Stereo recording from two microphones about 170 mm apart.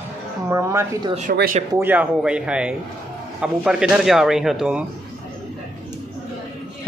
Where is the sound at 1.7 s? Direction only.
10° right (ahead or behind).